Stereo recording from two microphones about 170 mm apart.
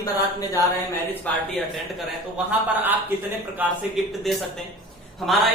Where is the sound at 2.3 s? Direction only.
10° right (ahead or behind).